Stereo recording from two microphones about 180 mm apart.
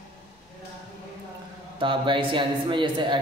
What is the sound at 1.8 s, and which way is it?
A man's voice, 25° right (ahead or behind).